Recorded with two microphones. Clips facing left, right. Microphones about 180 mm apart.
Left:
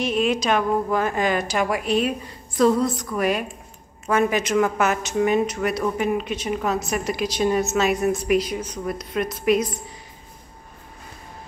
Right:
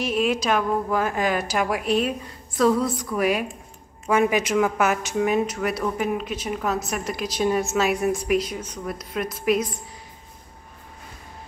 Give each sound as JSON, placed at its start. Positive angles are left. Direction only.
{"t": 0.0, "sound": "a woman's voice", "side_deg": -5}